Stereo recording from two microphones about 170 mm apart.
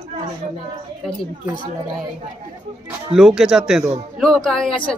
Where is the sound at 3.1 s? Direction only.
5° right (ahead or behind).